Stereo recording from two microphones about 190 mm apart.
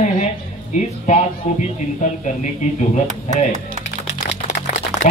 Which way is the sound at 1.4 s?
40° left (ahead or behind).